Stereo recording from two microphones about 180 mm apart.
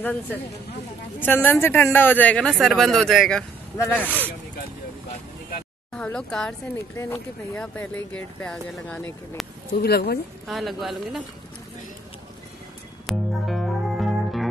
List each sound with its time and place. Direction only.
0.0 s speech: 10° left (ahead or behind)
3.7 s speech: 15° left (ahead or behind)
5.9 s a woman's voice: 5° left (ahead or behind)
9.8 s speech: 60° left (ahead or behind)
10.4 s a woman's voice: centre (ahead or behind)
13.0 s music: centre (ahead or behind)